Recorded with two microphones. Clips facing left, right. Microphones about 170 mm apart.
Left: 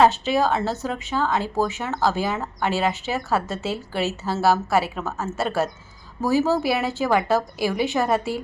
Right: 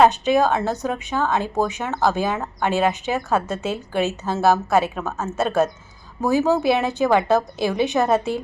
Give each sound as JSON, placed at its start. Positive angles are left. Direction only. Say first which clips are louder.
{"t": 0.0, "sound": "a woman's voice", "louder": "right 2 dB", "side_deg": -15}